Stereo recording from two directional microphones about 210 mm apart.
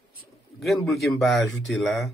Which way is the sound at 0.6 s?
Centre (ahead or behind).